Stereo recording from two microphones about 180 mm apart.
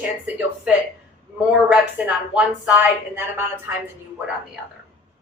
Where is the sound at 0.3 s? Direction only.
10° right (ahead or behind).